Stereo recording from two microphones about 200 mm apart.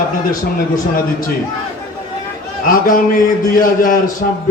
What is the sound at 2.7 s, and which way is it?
A man's voice, 45° left (ahead or behind).